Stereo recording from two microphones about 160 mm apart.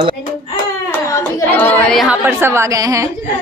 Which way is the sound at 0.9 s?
15° left (ahead or behind).